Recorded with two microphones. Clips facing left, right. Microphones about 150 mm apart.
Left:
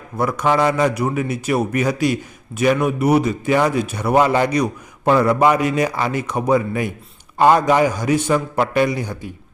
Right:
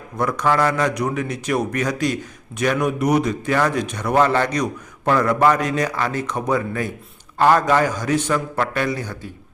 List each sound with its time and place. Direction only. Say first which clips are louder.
0.2 s a man's voice: left 2 dB; 5° left (ahead or behind)